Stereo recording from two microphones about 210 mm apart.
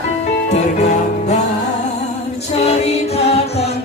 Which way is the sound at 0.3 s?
30° left (ahead or behind).